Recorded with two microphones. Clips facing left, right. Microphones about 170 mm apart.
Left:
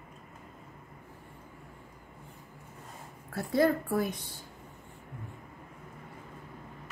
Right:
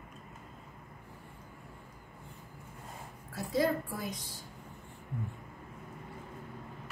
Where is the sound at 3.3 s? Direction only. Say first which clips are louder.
Left 4 dB; 55° left (ahead or behind).